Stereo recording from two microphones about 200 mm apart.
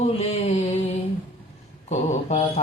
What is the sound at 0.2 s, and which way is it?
Mantra, 30° left (ahead or behind).